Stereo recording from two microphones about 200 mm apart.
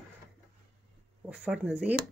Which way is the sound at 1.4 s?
5° right (ahead or behind).